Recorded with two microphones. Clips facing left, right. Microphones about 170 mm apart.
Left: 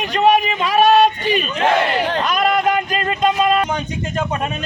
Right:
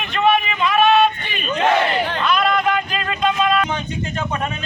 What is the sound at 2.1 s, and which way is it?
Music, 40° left (ahead or behind).